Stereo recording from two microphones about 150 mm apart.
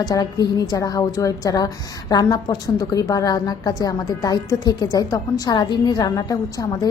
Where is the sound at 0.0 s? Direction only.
25° left (ahead or behind).